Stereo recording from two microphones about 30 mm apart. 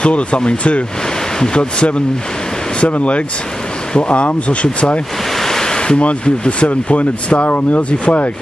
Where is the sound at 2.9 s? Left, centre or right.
Left.